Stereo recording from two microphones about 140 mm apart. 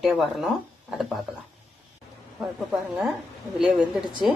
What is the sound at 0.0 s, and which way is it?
Speech, centre (ahead or behind).